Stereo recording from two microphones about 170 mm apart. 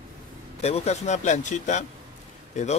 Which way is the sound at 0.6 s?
40° left (ahead or behind).